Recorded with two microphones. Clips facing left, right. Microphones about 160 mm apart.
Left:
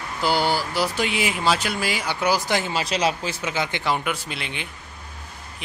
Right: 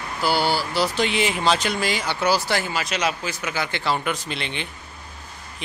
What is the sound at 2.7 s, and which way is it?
A man's voice, 30° left (ahead or behind).